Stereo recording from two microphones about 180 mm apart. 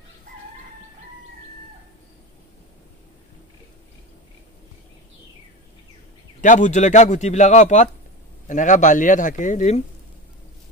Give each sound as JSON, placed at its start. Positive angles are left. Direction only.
{"t": 6.4, "sound": "a man's voice", "side_deg": 45}